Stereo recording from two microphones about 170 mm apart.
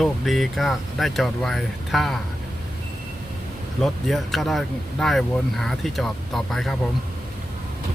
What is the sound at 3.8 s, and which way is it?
Speech, centre (ahead or behind).